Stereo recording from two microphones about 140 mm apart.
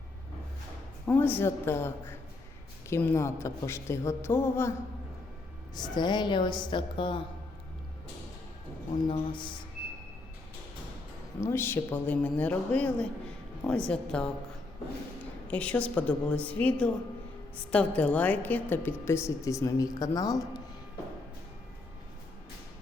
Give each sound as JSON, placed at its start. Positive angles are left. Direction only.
{"t": 1.0, "sound": "a woman's voice", "side_deg": 15}
{"t": 2.9, "sound": "a woman's voice", "side_deg": 15}
{"t": 5.7, "sound": "a woman's voice", "side_deg": 30}
{"t": 9.0, "sound": "a woman's voice", "side_deg": 35}
{"t": 11.3, "sound": "a woman's voice", "side_deg": 20}
{"t": 15.4, "sound": "a woman's voice", "side_deg": 10}